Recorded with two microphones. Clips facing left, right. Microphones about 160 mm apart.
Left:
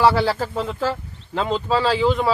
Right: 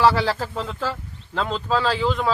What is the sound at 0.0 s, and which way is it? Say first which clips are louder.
Speech: left 1 dB; 10° left (ahead or behind).